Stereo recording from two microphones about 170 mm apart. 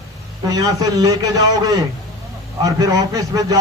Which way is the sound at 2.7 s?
20° right (ahead or behind).